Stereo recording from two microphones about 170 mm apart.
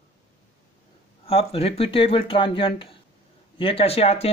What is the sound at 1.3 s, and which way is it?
Speech, 35° left (ahead or behind).